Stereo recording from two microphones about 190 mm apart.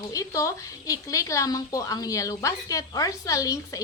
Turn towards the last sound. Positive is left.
turn(degrees=20)  # may be behind; listen again after turning